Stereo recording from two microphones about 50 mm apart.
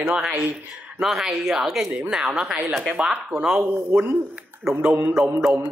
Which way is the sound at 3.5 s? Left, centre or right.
Right.